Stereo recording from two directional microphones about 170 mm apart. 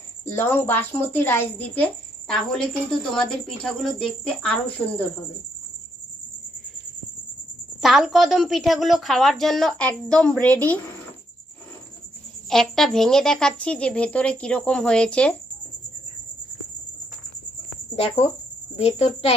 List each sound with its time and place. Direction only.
0.3 s a woman's voice: 15° left (ahead or behind)
7.8 s a woman's voice: centre (ahead or behind)
12.5 s speech: centre (ahead or behind)
17.9 s a child's voice: 35° left (ahead or behind)